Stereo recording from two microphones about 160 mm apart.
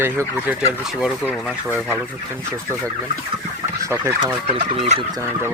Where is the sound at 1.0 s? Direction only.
5° right (ahead or behind).